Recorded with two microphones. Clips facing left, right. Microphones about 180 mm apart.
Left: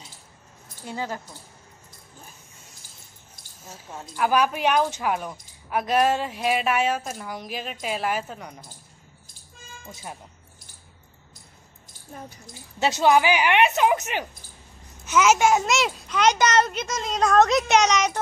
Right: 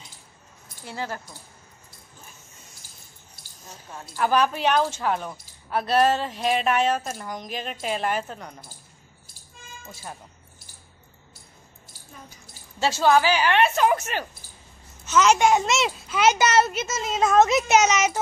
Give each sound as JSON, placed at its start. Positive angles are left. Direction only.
{"t": 0.8, "sound": "speech", "side_deg": 15}
{"t": 4.2, "sound": "a child's voice", "side_deg": 10}
{"t": 12.7, "sound": "a child's voice", "side_deg": 20}